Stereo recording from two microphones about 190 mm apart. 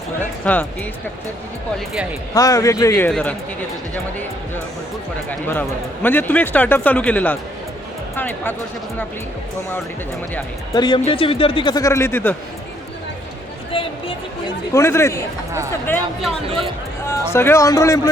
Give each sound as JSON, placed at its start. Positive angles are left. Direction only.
{"t": 0.4, "sound": "speech", "side_deg": 10}
{"t": 2.3, "sound": "speech", "side_deg": 20}
{"t": 3.1, "sound": "speech", "side_deg": 5}
{"t": 5.3, "sound": "speech", "side_deg": 10}
{"t": 10.8, "sound": "speech", "side_deg": 20}
{"t": 13.7, "sound": "a sound", "side_deg": 30}
{"t": 14.7, "sound": "speech", "side_deg": 15}
{"t": 16.5, "sound": "speech", "side_deg": -30}
{"t": 17.1, "sound": "speech", "side_deg": 15}